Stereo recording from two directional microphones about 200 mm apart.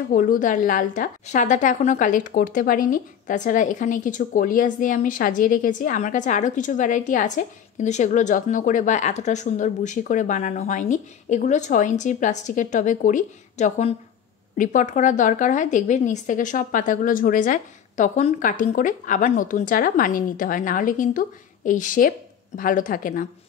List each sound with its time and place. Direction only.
0.1 s a woman's voice: 45° left (ahead or behind)